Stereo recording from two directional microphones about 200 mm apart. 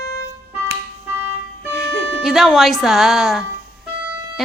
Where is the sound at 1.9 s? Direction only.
Centre (ahead or behind).